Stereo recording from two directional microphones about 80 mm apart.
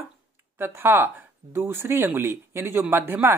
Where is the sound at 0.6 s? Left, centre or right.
Right.